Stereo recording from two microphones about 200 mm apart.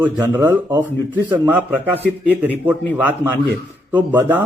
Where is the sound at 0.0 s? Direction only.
15° right (ahead or behind).